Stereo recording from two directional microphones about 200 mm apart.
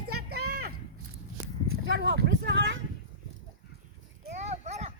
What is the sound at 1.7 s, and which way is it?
Speech, 55° right (ahead or behind).